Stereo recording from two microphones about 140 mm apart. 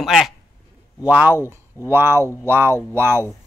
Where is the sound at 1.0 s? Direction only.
10° right (ahead or behind).